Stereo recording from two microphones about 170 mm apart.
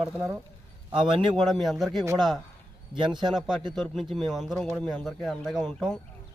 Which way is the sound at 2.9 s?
25° right (ahead or behind).